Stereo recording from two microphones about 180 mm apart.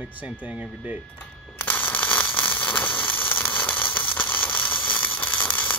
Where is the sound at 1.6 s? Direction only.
10° left (ahead or behind).